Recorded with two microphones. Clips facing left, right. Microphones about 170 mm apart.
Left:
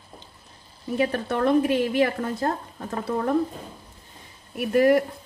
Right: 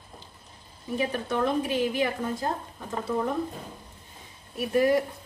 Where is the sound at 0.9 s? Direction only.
65° left (ahead or behind).